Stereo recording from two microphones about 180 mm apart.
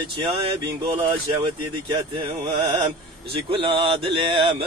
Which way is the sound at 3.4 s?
30° right (ahead or behind).